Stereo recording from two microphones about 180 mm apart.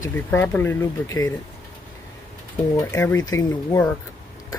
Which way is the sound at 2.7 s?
15° left (ahead or behind).